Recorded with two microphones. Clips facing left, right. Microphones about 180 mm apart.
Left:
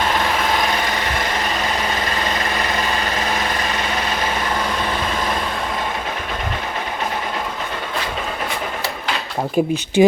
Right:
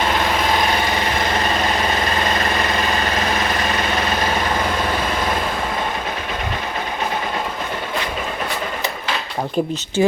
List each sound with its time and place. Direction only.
9.6 s speech: 10° left (ahead or behind)